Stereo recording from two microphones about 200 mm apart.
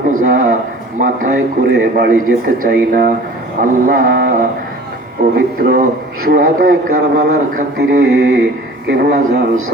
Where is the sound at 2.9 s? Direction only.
45° right (ahead or behind).